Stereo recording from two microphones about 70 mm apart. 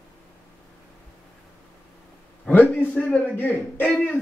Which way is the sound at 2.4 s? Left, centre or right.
Left.